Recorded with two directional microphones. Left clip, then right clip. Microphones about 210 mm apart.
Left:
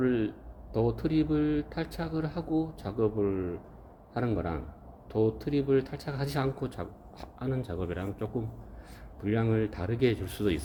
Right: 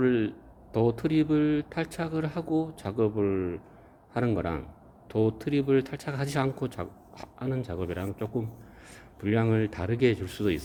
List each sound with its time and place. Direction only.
0.0 s speech: 35° right (ahead or behind)